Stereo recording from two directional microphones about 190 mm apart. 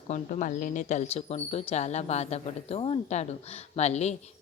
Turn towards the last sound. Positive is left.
turn(degrees=35)  # may be behind; listen again after turning